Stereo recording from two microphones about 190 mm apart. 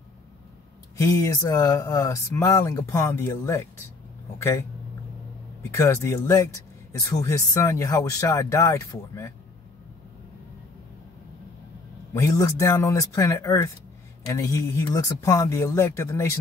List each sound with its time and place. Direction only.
0.9 s speech: 15° left (ahead or behind)
5.8 s speech: 15° left (ahead or behind)
12.1 s speech: 15° left (ahead or behind)